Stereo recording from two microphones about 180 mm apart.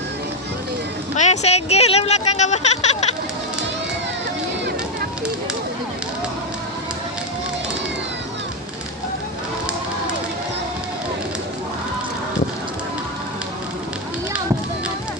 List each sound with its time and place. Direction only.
1.1 s speech: 40° left (ahead or behind)